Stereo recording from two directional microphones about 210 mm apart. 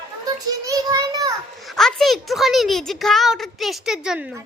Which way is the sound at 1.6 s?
Centre (ahead or behind).